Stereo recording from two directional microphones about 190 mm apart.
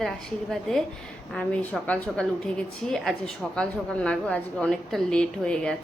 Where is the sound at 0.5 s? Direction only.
Centre (ahead or behind).